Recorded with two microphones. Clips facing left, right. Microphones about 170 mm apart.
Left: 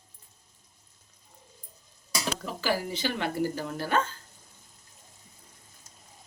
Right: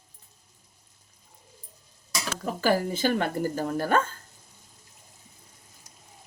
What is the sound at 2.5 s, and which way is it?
Speech, 50° right (ahead or behind).